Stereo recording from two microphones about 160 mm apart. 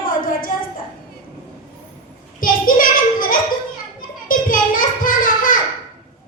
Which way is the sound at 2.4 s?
60° left (ahead or behind).